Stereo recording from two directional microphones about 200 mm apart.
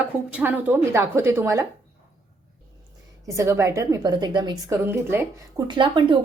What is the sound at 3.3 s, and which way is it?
A woman's voice, 15° right (ahead or behind).